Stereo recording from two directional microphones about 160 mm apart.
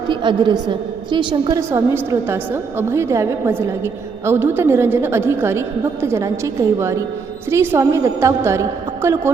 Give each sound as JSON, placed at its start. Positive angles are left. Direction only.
{"t": 0.1, "sound": "a woman's voice", "side_deg": -30}